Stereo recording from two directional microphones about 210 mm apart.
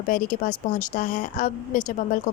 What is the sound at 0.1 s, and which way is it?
Speech, 40° left (ahead or behind).